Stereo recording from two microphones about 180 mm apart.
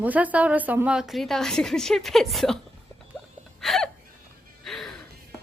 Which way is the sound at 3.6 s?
Centre (ahead or behind).